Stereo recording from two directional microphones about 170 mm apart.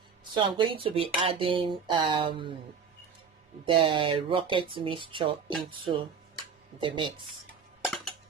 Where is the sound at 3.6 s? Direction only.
30° right (ahead or behind).